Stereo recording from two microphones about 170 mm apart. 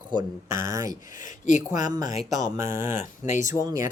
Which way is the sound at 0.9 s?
50° left (ahead or behind).